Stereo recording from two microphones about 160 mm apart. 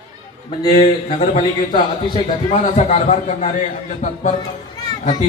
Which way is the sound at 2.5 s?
45° left (ahead or behind).